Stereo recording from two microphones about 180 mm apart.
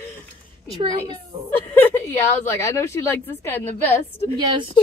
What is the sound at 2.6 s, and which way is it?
Speech, 15° left (ahead or behind).